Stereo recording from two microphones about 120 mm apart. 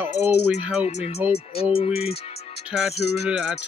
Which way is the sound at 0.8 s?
55° left (ahead or behind).